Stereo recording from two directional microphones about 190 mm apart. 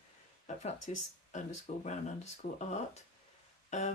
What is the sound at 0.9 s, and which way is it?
Speech, 35° left (ahead or behind).